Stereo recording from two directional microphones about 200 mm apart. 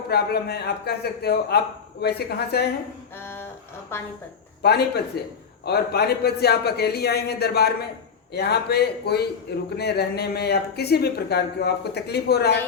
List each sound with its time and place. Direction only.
0.1 s a man's voice: 50° left (ahead or behind)
3.2 s a woman's voice: 10° left (ahead or behind)
4.6 s a man's voice: 55° left (ahead or behind)